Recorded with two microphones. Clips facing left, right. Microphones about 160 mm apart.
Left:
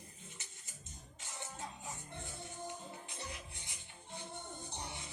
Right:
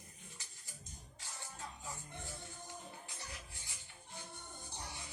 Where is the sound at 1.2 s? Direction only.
20° left (ahead or behind).